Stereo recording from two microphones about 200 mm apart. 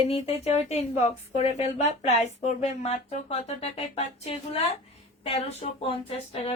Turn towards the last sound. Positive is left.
turn(degrees=30)  # may be behind; listen again after turning